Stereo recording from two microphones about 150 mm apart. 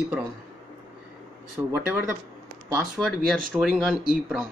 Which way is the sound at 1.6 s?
15° right (ahead or behind).